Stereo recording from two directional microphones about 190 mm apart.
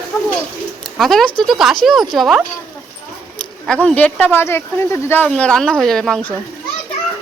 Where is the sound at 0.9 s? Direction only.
Centre (ahead or behind).